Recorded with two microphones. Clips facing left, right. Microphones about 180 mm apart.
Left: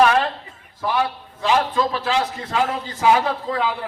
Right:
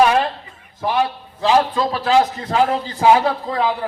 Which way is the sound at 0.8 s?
20° right (ahead or behind).